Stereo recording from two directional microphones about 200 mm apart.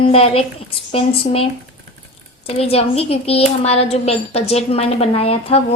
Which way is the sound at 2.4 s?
30° left (ahead or behind).